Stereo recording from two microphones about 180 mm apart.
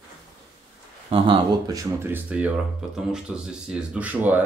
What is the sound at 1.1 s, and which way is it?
Speech, 30° right (ahead or behind).